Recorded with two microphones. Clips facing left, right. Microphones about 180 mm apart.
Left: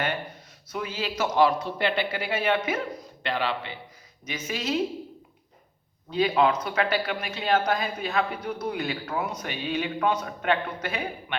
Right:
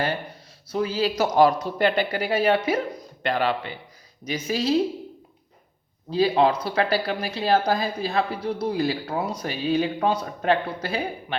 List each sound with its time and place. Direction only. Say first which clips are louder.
0.7 s speech: right 8 dB; 35° right (ahead or behind)
6.1 s speech: right 3 dB; 35° right (ahead or behind)